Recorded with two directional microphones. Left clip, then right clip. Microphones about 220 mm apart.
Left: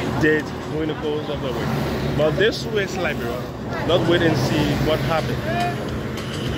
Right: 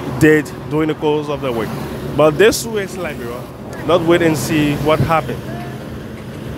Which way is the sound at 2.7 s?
20° right (ahead or behind).